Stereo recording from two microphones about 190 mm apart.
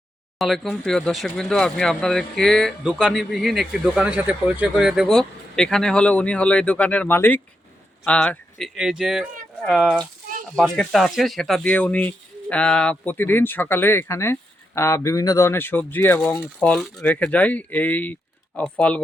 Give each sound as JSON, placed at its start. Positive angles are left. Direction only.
{"t": 0.3, "sound": "speech", "side_deg": 0}